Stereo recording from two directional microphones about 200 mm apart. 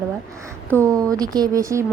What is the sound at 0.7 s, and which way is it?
A woman's voice, 15° right (ahead or behind).